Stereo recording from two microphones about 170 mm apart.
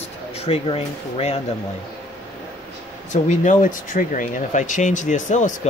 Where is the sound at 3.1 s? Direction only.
45° left (ahead or behind).